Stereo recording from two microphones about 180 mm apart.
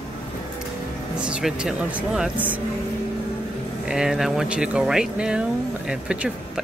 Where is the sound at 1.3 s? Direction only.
5° right (ahead or behind).